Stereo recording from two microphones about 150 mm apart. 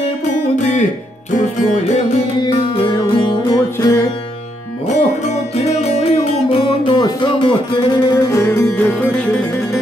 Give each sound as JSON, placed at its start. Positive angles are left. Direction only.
{"t": 2.4, "sound": "music", "side_deg": 35}
{"t": 4.8, "sound": "music", "side_deg": 50}